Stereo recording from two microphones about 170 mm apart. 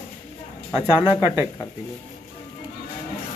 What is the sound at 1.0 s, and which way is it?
Speech, 10° right (ahead or behind).